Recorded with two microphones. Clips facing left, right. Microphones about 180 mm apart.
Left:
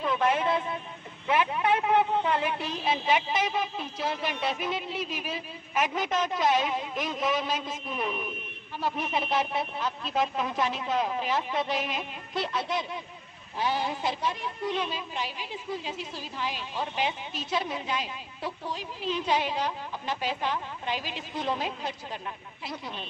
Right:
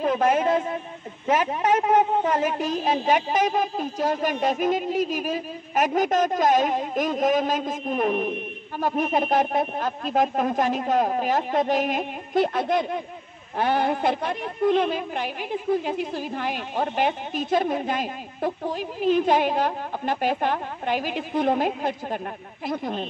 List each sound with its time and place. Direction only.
0.0 s a woman's voice: 45° right (ahead or behind)